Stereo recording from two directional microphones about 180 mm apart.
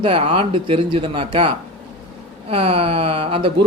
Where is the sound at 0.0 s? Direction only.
30° right (ahead or behind).